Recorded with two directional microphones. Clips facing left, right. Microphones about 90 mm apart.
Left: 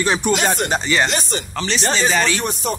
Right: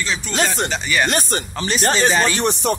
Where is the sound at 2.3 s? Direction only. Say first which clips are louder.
Right 3 dB; 70° right (ahead or behind).